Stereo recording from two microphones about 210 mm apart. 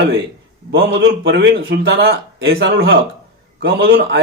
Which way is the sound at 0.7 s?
50° right (ahead or behind).